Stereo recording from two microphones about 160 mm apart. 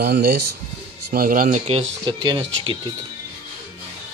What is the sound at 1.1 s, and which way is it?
Speech, 60° right (ahead or behind).